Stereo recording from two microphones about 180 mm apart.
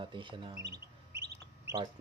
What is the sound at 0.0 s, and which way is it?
Speech, 25° right (ahead or behind).